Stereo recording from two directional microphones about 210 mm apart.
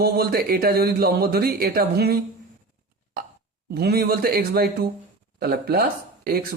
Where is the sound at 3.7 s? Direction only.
50° right (ahead or behind).